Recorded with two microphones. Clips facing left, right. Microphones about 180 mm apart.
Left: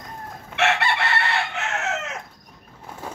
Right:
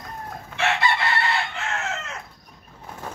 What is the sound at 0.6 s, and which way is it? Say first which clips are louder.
Chicken: left 1 dB; 70° left (ahead or behind).